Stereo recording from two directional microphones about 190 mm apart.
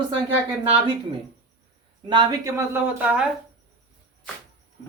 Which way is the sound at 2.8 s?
5° right (ahead or behind).